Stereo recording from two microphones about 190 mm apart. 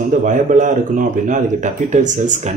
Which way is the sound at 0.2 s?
40° right (ahead or behind).